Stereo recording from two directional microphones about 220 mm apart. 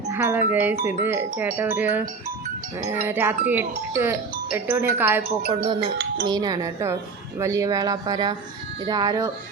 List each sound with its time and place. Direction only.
0.1 s music: 10° right (ahead or behind)
0.5 s speech: 10° right (ahead or behind)
3.1 s speech: 10° right (ahead or behind)
5.5 s music: 25° right (ahead or behind)
6.2 s speech: 20° right (ahead or behind)